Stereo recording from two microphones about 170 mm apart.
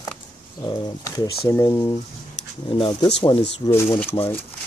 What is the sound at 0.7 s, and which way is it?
Speech, 20° left (ahead or behind).